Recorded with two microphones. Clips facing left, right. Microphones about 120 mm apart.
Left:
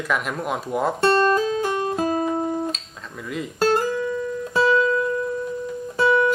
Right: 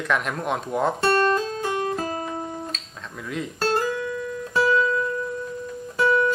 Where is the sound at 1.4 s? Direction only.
15° left (ahead or behind).